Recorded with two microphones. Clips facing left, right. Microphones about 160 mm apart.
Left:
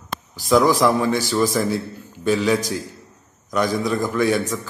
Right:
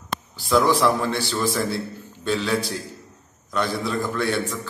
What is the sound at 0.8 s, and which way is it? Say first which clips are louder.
Speech: left 3 dB; 15° left (ahead or behind).